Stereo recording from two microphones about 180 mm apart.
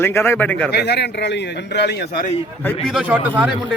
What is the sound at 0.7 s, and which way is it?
Speech, 65° left (ahead or behind).